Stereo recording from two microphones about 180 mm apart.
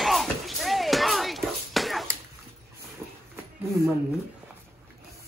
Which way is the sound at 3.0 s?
15° right (ahead or behind).